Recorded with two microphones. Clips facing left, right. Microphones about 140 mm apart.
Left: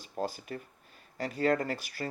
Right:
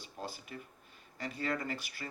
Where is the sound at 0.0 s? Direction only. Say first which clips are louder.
Left 9 dB; 45° left (ahead or behind).